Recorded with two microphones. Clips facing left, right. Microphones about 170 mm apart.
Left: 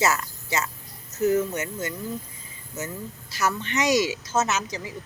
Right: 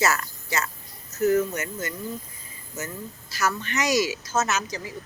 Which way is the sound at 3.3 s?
25° left (ahead or behind).